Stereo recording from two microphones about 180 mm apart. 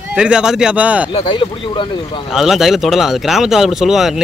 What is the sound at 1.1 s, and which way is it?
Speech, 30° left (ahead or behind).